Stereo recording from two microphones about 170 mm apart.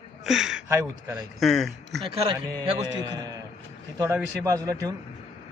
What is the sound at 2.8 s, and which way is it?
A man's voice, 20° right (ahead or behind).